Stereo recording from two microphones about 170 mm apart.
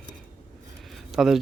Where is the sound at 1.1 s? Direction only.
Centre (ahead or behind).